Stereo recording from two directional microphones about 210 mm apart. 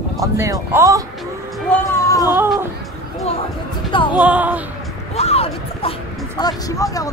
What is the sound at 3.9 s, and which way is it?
Speech, 25° left (ahead or behind).